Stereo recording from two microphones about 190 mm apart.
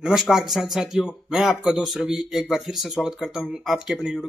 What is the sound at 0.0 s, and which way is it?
A man's voice, centre (ahead or behind).